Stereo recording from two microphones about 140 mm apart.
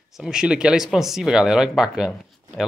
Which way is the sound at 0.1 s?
5° right (ahead or behind).